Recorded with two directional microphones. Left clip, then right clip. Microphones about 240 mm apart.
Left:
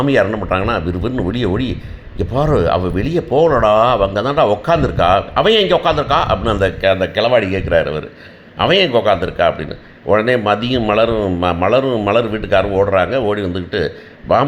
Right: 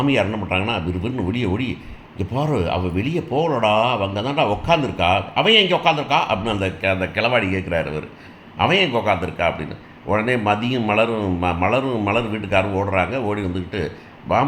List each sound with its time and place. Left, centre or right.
0.0 s speech: left